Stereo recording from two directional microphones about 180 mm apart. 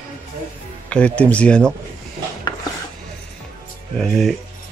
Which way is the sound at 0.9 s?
5° left (ahead or behind).